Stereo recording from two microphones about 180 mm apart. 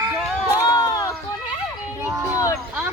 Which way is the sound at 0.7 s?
20° left (ahead or behind).